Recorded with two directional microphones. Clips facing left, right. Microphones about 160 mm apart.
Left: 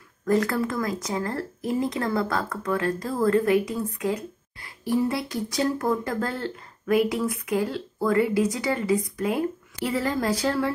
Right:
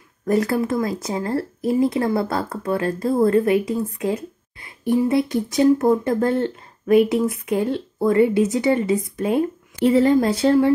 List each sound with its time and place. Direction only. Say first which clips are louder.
0.2 s speech: right 3 dB; 25° right (ahead or behind)